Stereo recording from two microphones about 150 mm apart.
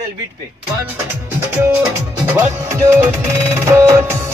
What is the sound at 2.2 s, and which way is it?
Music, 15° right (ahead or behind).